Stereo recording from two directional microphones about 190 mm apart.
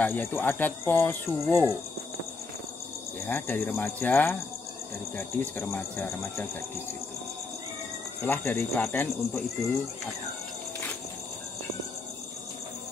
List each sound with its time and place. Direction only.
0.0 s speech: 10° left (ahead or behind)
3.3 s speech: 10° left (ahead or behind)
8.3 s speech: 10° left (ahead or behind)